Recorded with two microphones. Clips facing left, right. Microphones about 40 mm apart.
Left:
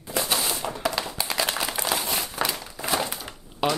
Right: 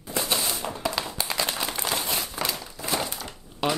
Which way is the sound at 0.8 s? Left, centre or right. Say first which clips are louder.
Left 1 dB; centre.